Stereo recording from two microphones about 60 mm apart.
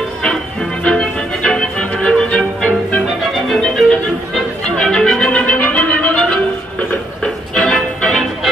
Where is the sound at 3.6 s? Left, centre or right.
Centre.